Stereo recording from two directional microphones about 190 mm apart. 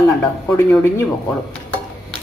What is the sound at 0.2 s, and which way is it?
Speech, 10° left (ahead or behind).